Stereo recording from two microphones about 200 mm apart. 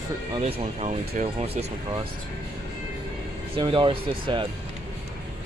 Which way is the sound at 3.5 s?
25° right (ahead or behind).